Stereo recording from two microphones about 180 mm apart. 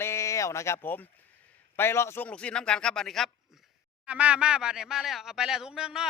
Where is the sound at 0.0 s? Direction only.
15° left (ahead or behind).